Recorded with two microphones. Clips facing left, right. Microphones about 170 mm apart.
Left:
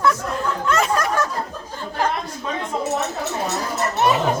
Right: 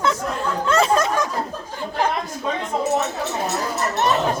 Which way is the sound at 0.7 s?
30° right (ahead or behind).